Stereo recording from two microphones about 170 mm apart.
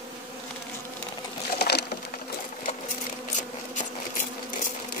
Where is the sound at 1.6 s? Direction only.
70° left (ahead or behind).